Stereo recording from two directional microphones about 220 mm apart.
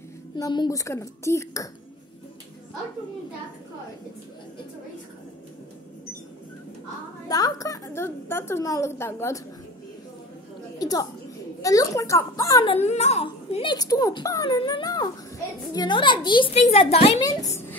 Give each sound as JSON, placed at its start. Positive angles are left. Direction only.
{"t": 0.4, "sound": "a woman's voice", "side_deg": 15}
{"t": 7.2, "sound": "a woman's voice", "side_deg": 15}
{"t": 10.8, "sound": "a sound", "side_deg": 15}
{"t": 11.6, "sound": "a woman's voice", "side_deg": 15}
{"t": 12.7, "sound": "speech", "side_deg": 30}
{"t": 17.2, "sound": "a woman's voice", "side_deg": 15}